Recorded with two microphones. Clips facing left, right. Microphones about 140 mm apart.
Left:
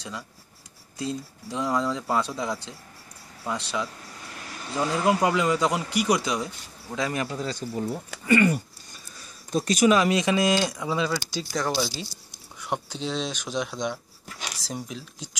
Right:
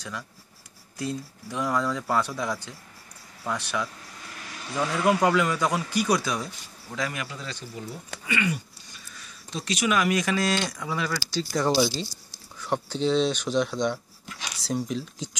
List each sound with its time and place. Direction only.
0.9 s speech: 20° left (ahead or behind)
7.1 s speech: 35° left (ahead or behind)
9.2 s a sound: 45° left (ahead or behind)
9.9 s speech: 25° left (ahead or behind)
11.6 s speech: 15° right (ahead or behind)
12.5 s speech: 10° left (ahead or behind)